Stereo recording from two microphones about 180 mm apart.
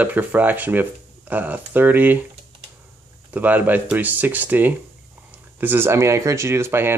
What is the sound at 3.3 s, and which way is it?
Speech, 10° right (ahead or behind).